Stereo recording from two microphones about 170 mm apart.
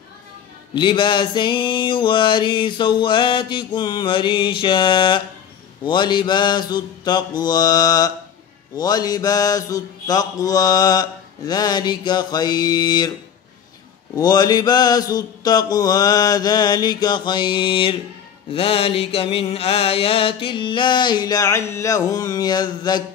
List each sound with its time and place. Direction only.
0.7 s mantra: 30° left (ahead or behind)
14.1 s mantra: 25° left (ahead or behind)